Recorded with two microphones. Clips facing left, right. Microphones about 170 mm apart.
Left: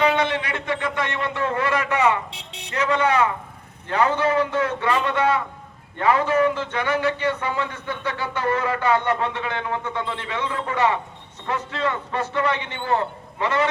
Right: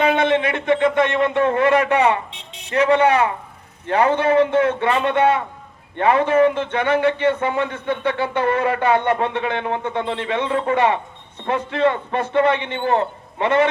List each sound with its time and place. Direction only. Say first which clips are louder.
0.0 s a man's voice: right 4 dB; 25° right (ahead or behind)
2.3 s buzzer: left 1 dB; 75° left (ahead or behind)
3.8 s a man's voice: right 4 dB; 30° right (ahead or behind)